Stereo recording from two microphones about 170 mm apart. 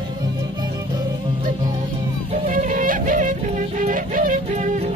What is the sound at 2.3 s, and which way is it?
Music, 45° right (ahead or behind).